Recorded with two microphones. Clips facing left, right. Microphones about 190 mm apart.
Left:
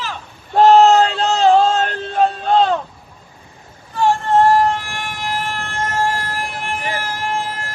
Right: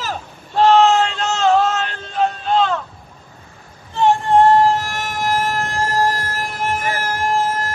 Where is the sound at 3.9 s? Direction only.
20° right (ahead or behind).